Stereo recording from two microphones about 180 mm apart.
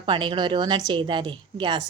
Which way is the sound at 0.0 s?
25° right (ahead or behind).